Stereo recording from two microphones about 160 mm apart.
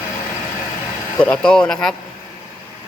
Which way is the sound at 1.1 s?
5° left (ahead or behind).